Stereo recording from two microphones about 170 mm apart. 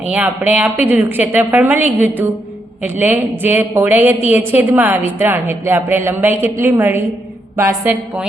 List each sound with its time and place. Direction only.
0.1 s a woman's voice: 10° right (ahead or behind)